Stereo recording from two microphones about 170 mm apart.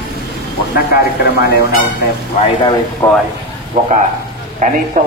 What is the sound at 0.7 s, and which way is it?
Speech, 70° left (ahead or behind).